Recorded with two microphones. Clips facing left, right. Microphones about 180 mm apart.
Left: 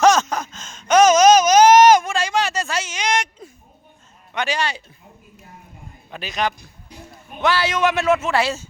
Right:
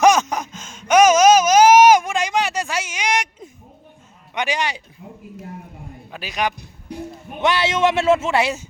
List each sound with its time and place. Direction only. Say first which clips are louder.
0.0 s a sound: even; 15° right (ahead or behind)
4.4 s speech: even; 15° right (ahead or behind)
6.1 s a man's voice: even; 10° right (ahead or behind)
7.3 s a man's voice: even; 20° right (ahead or behind)